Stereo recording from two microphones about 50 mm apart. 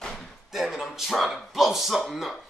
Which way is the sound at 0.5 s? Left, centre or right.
Centre.